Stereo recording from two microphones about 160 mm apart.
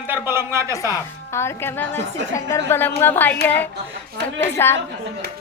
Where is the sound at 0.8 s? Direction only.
20° left (ahead or behind).